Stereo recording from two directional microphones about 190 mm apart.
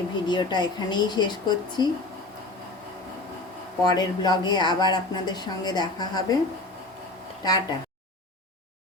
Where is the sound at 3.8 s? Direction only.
20° left (ahead or behind).